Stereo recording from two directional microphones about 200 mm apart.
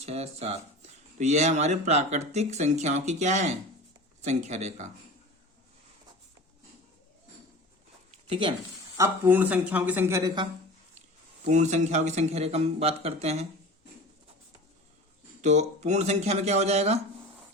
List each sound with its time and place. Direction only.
0.0 s speech: 30° right (ahead or behind)
8.3 s speech: 25° right (ahead or behind)
9.0 s speech: 10° right (ahead or behind)
11.4 s speech: 35° right (ahead or behind)
15.4 s speech: 35° right (ahead or behind)